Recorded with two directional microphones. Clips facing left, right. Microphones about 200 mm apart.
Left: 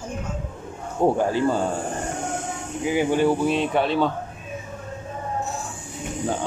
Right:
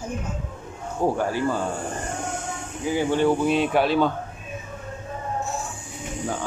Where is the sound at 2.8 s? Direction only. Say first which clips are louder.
Left 1 dB; 15° left (ahead or behind).